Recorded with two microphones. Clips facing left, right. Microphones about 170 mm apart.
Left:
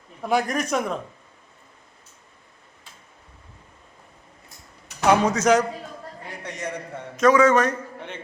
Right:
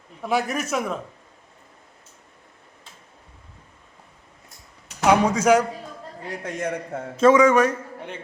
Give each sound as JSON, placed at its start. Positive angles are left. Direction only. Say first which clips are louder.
{"t": 0.2, "sound": "a man's voice", "louder": "left 1 dB", "side_deg": 0}
{"t": 5.0, "sound": "a man's voice", "louder": "right 1 dB", "side_deg": -10}
{"t": 6.3, "sound": "a man's voice", "louder": "right 5 dB", "side_deg": -50}
{"t": 7.2, "sound": "a man's voice", "louder": "right 2 dB", "side_deg": -25}
{"t": 7.4, "sound": "a man's voice", "louder": "right 1 dB", "side_deg": -10}